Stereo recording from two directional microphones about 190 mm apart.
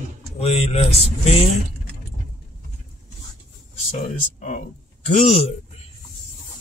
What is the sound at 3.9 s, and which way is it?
Speech, 40° left (ahead or behind).